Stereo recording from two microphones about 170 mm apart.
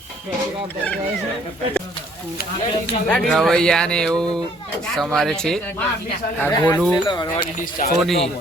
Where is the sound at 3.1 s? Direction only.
5° left (ahead or behind).